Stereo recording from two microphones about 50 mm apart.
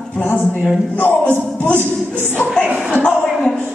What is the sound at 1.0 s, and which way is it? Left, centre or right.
Music, left.